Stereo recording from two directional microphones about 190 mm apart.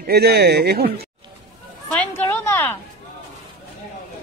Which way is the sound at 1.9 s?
10° left (ahead or behind).